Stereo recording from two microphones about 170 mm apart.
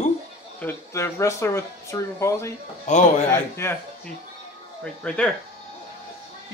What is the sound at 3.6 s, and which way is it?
Speech, 15° left (ahead or behind).